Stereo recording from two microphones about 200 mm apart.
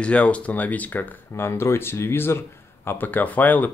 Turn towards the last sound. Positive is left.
turn(degrees=10)  # may be behind; listen again after turning